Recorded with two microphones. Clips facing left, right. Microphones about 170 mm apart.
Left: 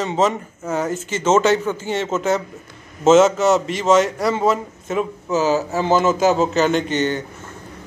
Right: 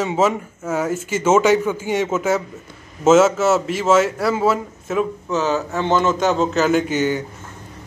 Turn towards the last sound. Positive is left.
turn(degrees=-10)  # may be behind; listen again after turning